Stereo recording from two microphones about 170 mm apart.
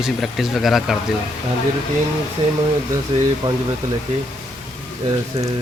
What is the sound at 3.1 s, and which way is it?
Speech, 30° right (ahead or behind).